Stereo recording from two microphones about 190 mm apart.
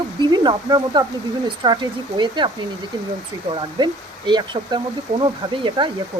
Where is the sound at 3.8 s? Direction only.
25° right (ahead or behind).